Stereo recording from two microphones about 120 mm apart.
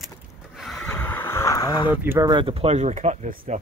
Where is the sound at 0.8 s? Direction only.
15° left (ahead or behind); by 1.9 s 30° left (ahead or behind).